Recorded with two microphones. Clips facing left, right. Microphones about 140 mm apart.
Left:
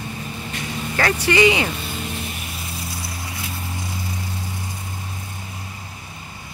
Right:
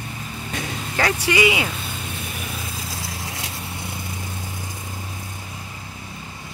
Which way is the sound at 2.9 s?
90° right.